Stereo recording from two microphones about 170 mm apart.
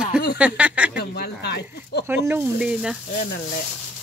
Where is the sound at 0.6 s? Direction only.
5° right (ahead or behind).